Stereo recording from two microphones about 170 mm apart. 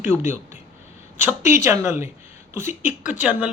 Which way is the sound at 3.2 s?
5° right (ahead or behind).